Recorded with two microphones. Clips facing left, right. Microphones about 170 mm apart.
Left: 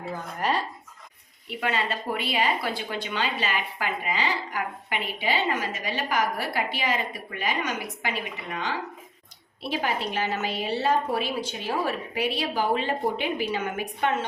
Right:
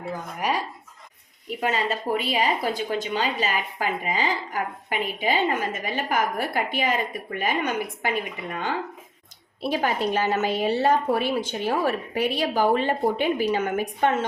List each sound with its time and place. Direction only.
0.3 s speech: 10° right (ahead or behind)
1.5 s a woman's voice: 40° right (ahead or behind)